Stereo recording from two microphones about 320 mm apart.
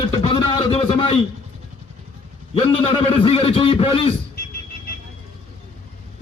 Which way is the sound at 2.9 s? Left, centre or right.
Centre.